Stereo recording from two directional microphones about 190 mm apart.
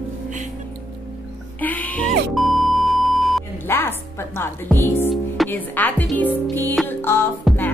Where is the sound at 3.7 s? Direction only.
10° left (ahead or behind).